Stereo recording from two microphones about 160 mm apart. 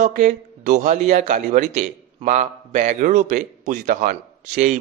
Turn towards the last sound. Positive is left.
turn(degrees=-50)  # may be behind; listen again after turning